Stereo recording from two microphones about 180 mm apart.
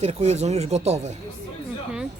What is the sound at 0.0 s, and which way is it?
Speech, 40° right (ahead or behind).